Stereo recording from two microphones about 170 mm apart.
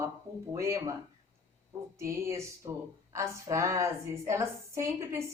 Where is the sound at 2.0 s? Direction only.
15° right (ahead or behind).